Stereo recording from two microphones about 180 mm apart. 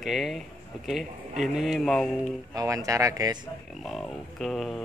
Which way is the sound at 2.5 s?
20° right (ahead or behind).